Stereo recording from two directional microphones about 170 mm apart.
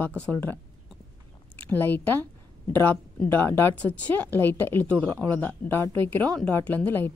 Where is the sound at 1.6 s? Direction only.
10° left (ahead or behind).